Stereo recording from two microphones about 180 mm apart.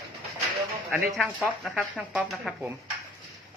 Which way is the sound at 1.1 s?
Centre (ahead or behind).